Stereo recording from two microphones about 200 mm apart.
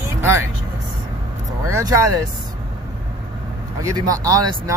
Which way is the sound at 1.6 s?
15° right (ahead or behind).